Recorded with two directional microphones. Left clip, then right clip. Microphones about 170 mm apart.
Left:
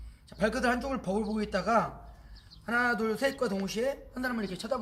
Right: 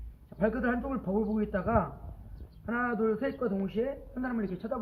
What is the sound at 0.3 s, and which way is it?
A woman's voice, 20° left (ahead or behind).